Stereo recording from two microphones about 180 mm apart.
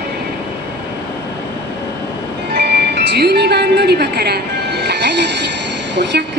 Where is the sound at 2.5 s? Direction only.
65° right (ahead or behind).